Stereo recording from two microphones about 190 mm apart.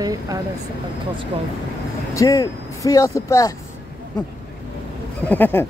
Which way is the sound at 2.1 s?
20° left (ahead or behind).